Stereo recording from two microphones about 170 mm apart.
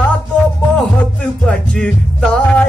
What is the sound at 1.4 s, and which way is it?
Music, 5° left (ahead or behind).